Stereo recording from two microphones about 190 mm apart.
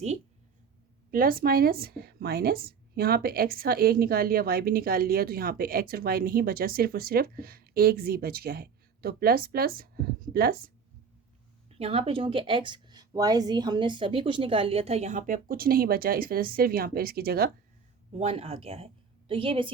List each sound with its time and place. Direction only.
1.1 s speech: 50° right (ahead or behind)
11.8 s speech: 30° right (ahead or behind); by 17.5 s 55° right (ahead or behind)
18.1 s a woman's voice: 30° right (ahead or behind)